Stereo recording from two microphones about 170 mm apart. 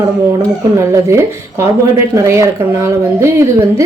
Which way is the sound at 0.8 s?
15° right (ahead or behind).